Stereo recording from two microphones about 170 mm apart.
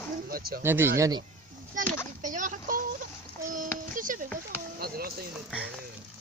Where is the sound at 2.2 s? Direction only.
50° right (ahead or behind).